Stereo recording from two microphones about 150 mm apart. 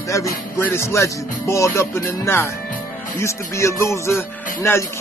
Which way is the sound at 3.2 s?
20° left (ahead or behind).